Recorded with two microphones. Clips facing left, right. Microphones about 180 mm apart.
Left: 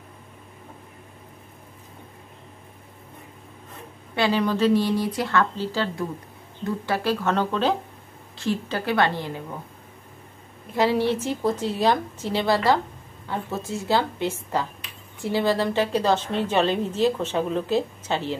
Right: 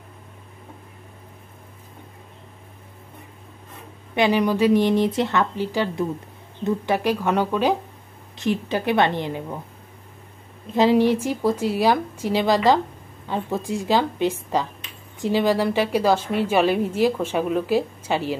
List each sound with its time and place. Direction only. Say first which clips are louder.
4.1 s a woman's voice: right 3 dB; 15° right (ahead or behind)
10.7 s a woman's voice: right 4 dB; 15° right (ahead or behind)